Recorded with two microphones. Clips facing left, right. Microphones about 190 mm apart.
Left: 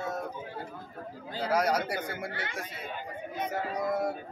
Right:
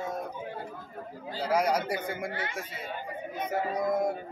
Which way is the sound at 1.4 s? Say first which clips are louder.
Right 1 dB; 10° right (ahead or behind).